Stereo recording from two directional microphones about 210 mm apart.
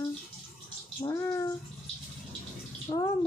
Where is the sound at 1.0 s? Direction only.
15° left (ahead or behind).